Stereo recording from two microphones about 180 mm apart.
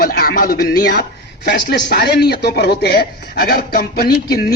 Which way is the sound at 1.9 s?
65° left (ahead or behind).